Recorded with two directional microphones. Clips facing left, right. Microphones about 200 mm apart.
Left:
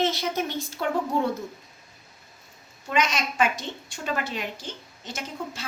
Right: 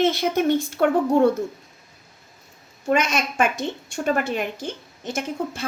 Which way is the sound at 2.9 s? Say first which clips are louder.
Right 5 dB; 45° right (ahead or behind).